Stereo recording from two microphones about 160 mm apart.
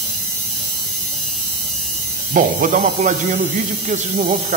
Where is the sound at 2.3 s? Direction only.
55° right (ahead or behind).